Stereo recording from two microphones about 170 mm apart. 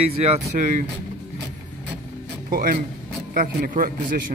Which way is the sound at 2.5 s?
60° right (ahead or behind).